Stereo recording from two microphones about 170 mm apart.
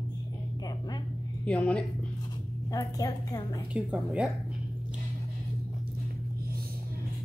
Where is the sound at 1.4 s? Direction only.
5° left (ahead or behind).